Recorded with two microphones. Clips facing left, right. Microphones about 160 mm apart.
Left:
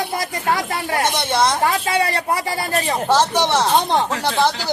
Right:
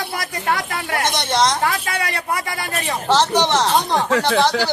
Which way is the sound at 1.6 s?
30° left (ahead or behind).